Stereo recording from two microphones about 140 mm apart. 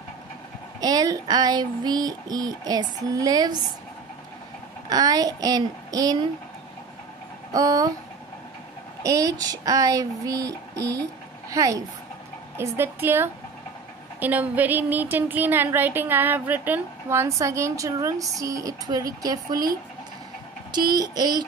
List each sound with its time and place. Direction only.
0.7 s child singing: 30° right (ahead or behind)
4.8 s child singing: 25° right (ahead or behind)
7.5 s child singing: 25° right (ahead or behind)
9.0 s child singing: 25° right (ahead or behind)
11.5 s speech: 25° right (ahead or behind)
18.4 s child singing: 25° right (ahead or behind)
20.7 s child singing: 30° right (ahead or behind)